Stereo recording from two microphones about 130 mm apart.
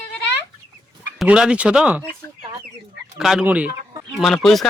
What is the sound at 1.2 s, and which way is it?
Speech, 5° right (ahead or behind).